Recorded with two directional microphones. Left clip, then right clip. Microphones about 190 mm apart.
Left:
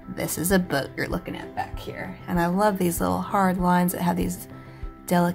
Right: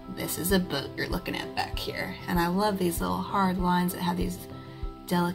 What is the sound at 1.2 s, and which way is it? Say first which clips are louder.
Speech: even; centre (ahead or behind).